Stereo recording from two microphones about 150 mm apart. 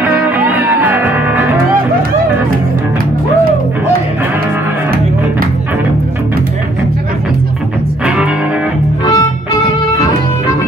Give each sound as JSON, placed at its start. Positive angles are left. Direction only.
{"t": 0.0, "sound": "music", "side_deg": -10}
{"t": 9.0, "sound": "music", "side_deg": 25}